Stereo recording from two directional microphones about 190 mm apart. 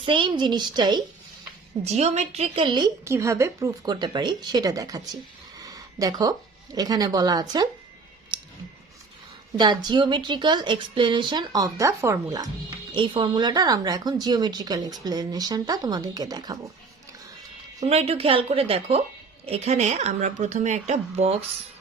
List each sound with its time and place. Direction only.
0.0 s speech: 25° right (ahead or behind)
1.8 s speech: 35° right (ahead or behind); by 5.0 s 20° right (ahead or behind)
5.5 s a sound: 20° right (ahead or behind)
6.7 s speech: 20° right (ahead or behind)
8.3 s a sound: 25° right (ahead or behind)
9.6 s speech: 20° right (ahead or behind)
17.8 s a woman's voice: 35° right (ahead or behind)